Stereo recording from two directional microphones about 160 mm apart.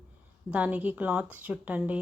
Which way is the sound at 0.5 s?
10° right (ahead or behind).